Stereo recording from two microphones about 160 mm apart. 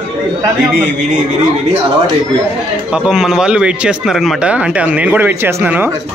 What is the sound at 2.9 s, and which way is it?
Speech, 5° right (ahead or behind).